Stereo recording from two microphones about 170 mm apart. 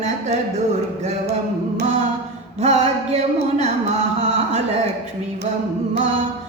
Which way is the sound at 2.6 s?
40° right (ahead or behind).